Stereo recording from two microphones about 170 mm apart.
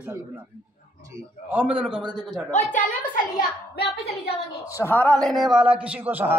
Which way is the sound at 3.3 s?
75° left (ahead or behind).